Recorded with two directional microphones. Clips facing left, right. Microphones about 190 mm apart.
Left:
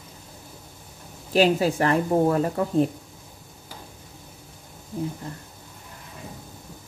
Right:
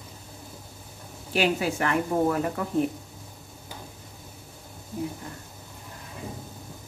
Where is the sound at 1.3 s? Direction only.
35° left (ahead or behind).